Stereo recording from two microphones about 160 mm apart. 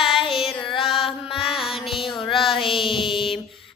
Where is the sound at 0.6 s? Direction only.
35° left (ahead or behind).